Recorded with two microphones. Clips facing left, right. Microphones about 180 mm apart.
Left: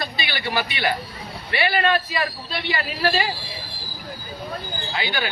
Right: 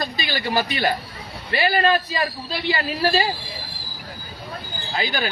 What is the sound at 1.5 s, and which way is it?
A man's voice, 35° right (ahead or behind).